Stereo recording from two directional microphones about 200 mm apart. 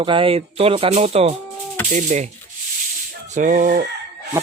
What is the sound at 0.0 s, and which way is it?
A man's voice, 25° right (ahead or behind).